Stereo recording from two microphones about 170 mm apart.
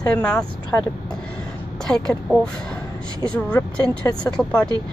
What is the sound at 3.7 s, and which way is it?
Speech, 5° left (ahead or behind).